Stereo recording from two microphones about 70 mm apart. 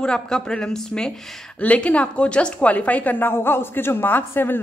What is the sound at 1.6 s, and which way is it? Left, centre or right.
A woman's voice, left.